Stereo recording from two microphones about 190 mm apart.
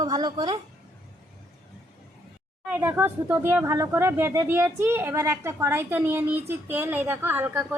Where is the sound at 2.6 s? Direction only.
10° right (ahead or behind).